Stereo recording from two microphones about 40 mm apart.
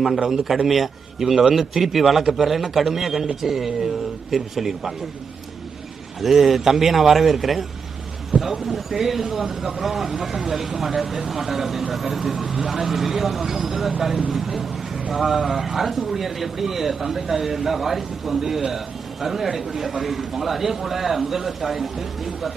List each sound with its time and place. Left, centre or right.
0.7 s a man's voice: centre
6.2 s a man's voice: centre
8.3 s speech: right
8.6 s a man's voice: centre